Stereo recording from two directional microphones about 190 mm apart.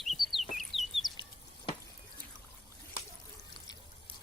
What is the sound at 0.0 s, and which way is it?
Chicken, centre (ahead or behind).